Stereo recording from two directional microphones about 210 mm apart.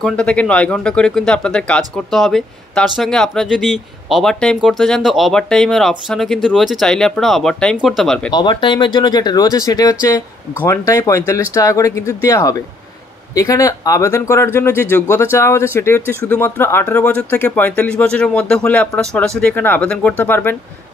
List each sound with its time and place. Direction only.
0.0 s speech: 5° left (ahead or behind)
8.3 s speech: 20° left (ahead or behind)